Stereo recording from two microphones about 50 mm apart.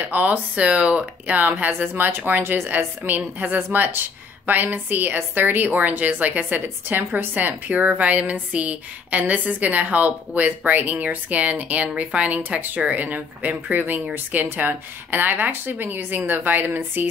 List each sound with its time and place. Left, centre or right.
0.0 s speech: right
1.4 s a woman's voice: right